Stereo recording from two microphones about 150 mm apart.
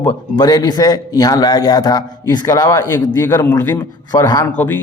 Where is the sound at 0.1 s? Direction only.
30° left (ahead or behind).